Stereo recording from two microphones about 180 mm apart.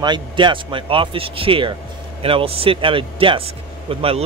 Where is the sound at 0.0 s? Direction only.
25° right (ahead or behind).